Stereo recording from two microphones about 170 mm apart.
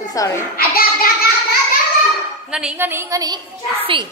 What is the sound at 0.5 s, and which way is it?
Speech, 60° left (ahead or behind).